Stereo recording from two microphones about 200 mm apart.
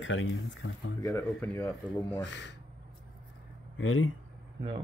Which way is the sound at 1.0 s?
10° left (ahead or behind).